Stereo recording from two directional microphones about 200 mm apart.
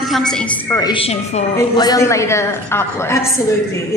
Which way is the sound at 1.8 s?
20° left (ahead or behind).